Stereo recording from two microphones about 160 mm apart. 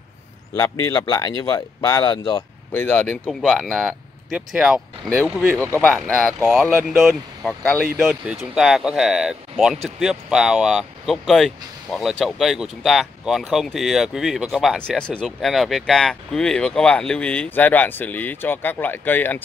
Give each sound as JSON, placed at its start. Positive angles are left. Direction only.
{"t": 0.6, "sound": "speech", "side_deg": 20}
{"t": 2.7, "sound": "speech", "side_deg": 10}
{"t": 5.5, "sound": "speech", "side_deg": -20}
{"t": 5.9, "sound": "speech", "side_deg": 0}